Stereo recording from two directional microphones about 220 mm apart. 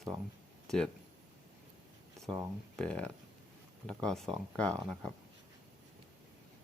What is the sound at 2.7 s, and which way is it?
Speech, 5° left (ahead or behind).